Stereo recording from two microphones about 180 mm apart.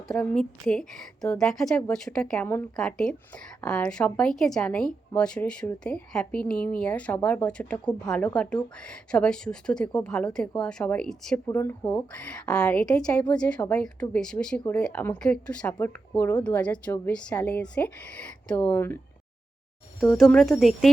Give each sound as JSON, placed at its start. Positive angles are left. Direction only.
{"t": 0.1, "sound": "a woman's voice", "side_deg": 5}
{"t": 11.4, "sound": "a woman's voice", "side_deg": 15}
{"t": 20.0, "sound": "a woman's voice", "side_deg": 0}